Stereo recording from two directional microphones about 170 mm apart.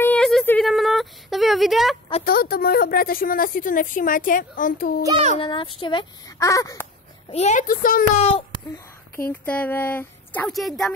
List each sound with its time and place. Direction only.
0.0 s a sound: 5° left (ahead or behind)
2.2 s a woman's voice: 60° left (ahead or behind)
5.4 s speech: 30° left (ahead or behind)
6.3 s a sound: 20° left (ahead or behind)
7.3 s speech: 45° left (ahead or behind)
8.2 s speech: 35° left (ahead or behind)
8.7 s speech: 15° left (ahead or behind)
10.5 s speech: centre (ahead or behind)